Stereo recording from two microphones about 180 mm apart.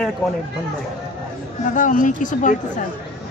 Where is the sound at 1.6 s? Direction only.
45° left (ahead or behind).